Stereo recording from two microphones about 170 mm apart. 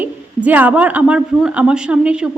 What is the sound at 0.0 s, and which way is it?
A woman's voice, 10° right (ahead or behind).